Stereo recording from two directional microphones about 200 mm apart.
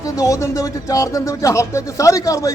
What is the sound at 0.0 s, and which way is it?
A man's voice, 15° left (ahead or behind).